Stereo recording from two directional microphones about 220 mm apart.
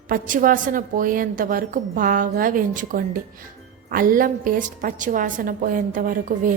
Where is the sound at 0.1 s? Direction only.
40° right (ahead or behind).